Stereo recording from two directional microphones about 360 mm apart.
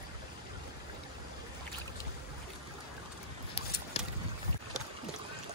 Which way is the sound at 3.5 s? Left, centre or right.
Centre.